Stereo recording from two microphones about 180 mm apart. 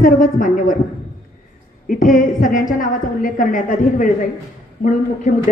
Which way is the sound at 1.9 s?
45° left (ahead or behind).